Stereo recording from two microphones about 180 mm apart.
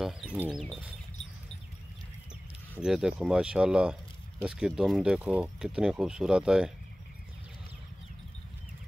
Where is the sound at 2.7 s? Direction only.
5° right (ahead or behind).